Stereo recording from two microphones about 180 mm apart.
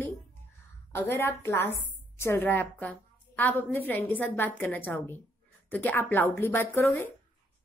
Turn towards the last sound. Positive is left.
turn(degrees=10)  # may be behind; listen again after turning